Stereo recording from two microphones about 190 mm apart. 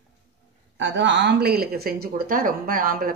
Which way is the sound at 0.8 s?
70° right (ahead or behind).